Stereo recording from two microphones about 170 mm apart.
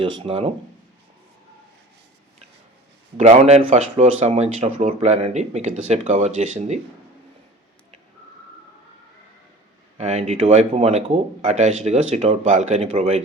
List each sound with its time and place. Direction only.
0.0 s speech: 35° right (ahead or behind)
3.2 s speech: 40° right (ahead or behind)
10.0 s speech: 40° right (ahead or behind)